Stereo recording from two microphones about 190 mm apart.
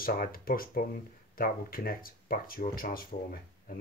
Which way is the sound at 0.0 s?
50° left (ahead or behind).